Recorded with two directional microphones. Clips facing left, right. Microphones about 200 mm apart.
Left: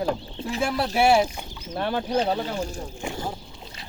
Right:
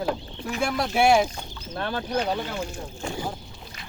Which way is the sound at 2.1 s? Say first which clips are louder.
Left 1 dB; 30° left (ahead or behind).